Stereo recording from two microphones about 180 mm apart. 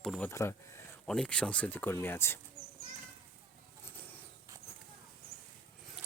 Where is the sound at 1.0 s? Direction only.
5° left (ahead or behind).